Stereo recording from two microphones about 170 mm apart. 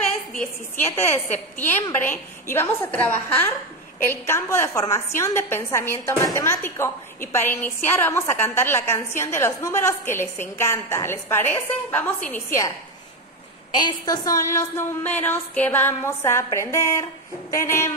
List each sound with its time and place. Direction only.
0.9 s a woman's voice: 15° left (ahead or behind)
13.7 s a woman's voice: 25° left (ahead or behind)